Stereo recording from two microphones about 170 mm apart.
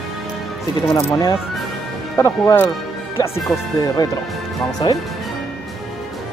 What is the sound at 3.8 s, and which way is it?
Speech, 25° left (ahead or behind).